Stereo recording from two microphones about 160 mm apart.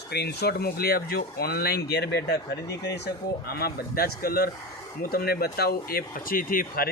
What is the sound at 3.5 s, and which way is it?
Speech, 75° left (ahead or behind).